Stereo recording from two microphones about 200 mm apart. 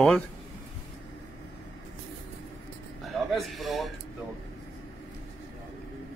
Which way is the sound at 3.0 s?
Centre (ahead or behind).